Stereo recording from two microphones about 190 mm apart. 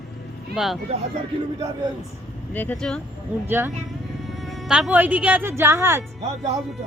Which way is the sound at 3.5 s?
10° right (ahead or behind).